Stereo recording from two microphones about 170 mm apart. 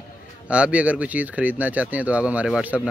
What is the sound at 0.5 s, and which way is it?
Speech, 5° right (ahead or behind).